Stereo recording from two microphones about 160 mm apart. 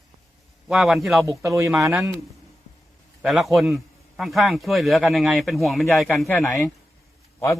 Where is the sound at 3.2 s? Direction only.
Centre (ahead or behind).